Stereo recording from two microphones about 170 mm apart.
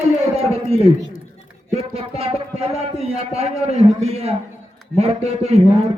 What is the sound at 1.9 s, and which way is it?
A man's voice, 40° right (ahead or behind).